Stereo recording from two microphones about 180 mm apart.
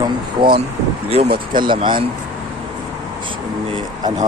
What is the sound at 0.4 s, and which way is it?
Speech, 30° right (ahead or behind).